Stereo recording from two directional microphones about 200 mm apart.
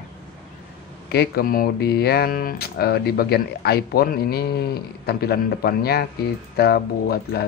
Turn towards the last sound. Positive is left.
turn(degrees=50)  # may be behind; listen again after turning